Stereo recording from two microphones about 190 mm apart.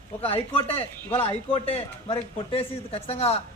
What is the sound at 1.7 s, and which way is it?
A man's voice, 30° left (ahead or behind).